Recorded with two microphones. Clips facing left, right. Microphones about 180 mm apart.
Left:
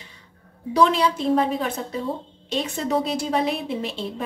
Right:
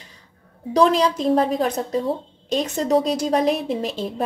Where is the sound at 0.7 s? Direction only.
35° right (ahead or behind).